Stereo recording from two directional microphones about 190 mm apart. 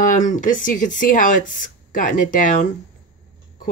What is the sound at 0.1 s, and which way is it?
Speech, 45° left (ahead or behind).